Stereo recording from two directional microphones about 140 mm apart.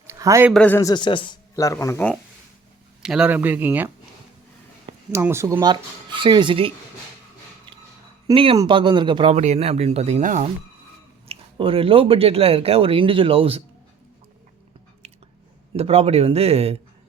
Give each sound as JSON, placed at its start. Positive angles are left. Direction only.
{"t": 0.1, "sound": "a sound", "side_deg": -20}
{"t": 0.5, "sound": "a man's voice", "side_deg": 10}
{"t": 0.8, "sound": "speech", "side_deg": 30}
{"t": 3.0, "sound": "speech", "side_deg": -5}
{"t": 5.1, "sound": "speech", "side_deg": -20}
{"t": 5.6, "sound": "speech", "side_deg": -35}
{"t": 8.3, "sound": "speech", "side_deg": -40}
{"t": 9.3, "sound": "speech", "side_deg": -50}
{"t": 11.3, "sound": "speech", "side_deg": -40}
{"t": 15.0, "sound": "chewing", "side_deg": -50}
{"t": 15.7, "sound": "speech", "side_deg": -45}